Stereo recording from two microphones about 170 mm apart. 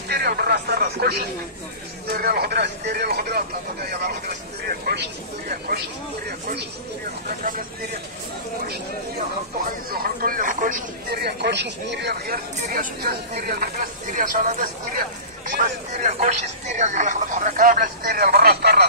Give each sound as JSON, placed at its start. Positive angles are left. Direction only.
{"t": 0.1, "sound": "speech", "side_deg": -65}
{"t": 4.6, "sound": "speech", "side_deg": -65}
{"t": 6.2, "sound": "speech", "side_deg": -70}
{"t": 7.2, "sound": "speech", "side_deg": -50}
{"t": 9.8, "sound": "speech", "side_deg": -60}
{"t": 12.7, "sound": "speech", "side_deg": -60}